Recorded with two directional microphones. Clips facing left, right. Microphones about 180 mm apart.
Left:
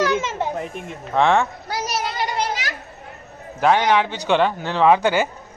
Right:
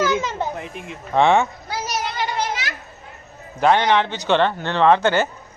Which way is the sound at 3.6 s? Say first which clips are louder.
Even; 10° left (ahead or behind).